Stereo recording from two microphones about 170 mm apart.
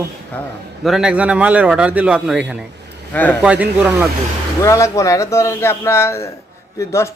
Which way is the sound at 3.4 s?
10° right (ahead or behind).